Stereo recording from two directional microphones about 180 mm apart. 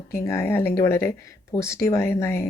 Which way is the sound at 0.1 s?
15° left (ahead or behind).